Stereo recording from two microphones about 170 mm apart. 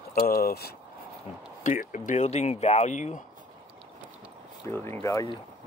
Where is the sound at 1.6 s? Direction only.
50° left (ahead or behind).